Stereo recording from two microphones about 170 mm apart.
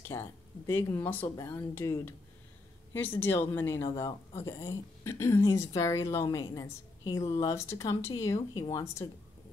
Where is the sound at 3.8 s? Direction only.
30° left (ahead or behind).